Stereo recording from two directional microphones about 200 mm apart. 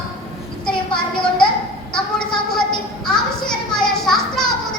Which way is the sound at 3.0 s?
5° left (ahead or behind).